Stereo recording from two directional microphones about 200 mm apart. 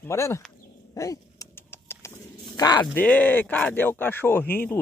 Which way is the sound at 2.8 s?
5° left (ahead or behind).